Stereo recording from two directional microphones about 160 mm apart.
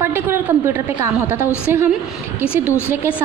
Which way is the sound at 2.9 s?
10° right (ahead or behind).